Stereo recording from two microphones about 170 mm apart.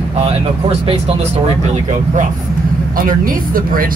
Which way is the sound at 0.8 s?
40° right (ahead or behind).